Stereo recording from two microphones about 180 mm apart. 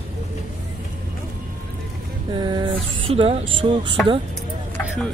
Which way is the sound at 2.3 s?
25° right (ahead or behind).